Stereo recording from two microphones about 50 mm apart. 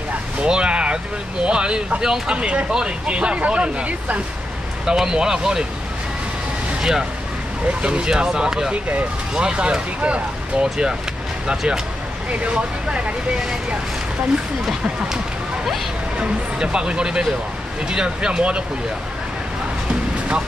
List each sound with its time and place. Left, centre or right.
0.4 s vehicle: centre
1.4 s speech: centre
2.3 s speech: right
6.8 s speech: centre
7.6 s speech: right
12.3 s speech: right
16.2 s speech: centre